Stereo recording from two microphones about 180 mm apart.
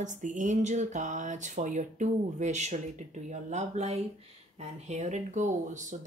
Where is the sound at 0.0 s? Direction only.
45° right (ahead or behind).